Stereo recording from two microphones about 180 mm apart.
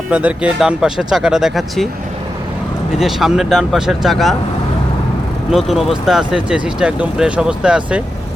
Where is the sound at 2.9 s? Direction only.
Centre (ahead or behind).